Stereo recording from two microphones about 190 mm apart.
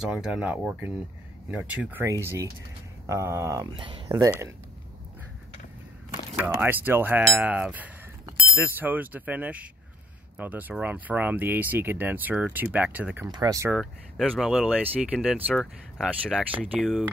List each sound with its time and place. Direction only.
0.0 s speech: 5° right (ahead or behind); by 4.3 s 25° right (ahead or behind)
6.6 s speech: 10° right (ahead or behind)
13.7 s speech: 5° right (ahead or behind)